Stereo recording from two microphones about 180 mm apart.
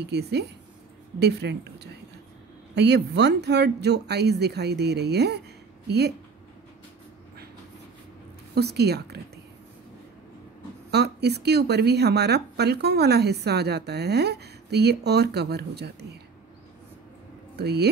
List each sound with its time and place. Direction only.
0.0 s speech: 70° right (ahead or behind)
8.5 s speech: 65° right (ahead or behind)
10.9 s speech: 65° right (ahead or behind)
17.6 s speech: 65° right (ahead or behind)